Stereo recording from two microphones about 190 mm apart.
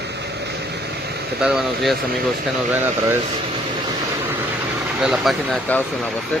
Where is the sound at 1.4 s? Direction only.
Centre (ahead or behind).